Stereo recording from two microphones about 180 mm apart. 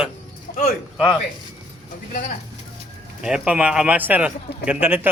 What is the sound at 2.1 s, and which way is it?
Speech, 50° left (ahead or behind).